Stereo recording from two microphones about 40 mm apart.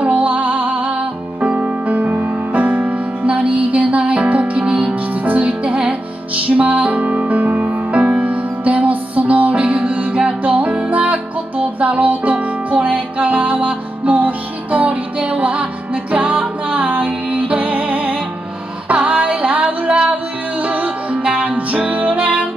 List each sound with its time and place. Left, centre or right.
0.0 s music: right